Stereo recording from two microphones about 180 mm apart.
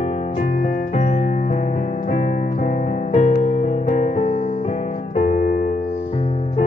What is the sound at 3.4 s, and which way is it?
Music, 40° left (ahead or behind).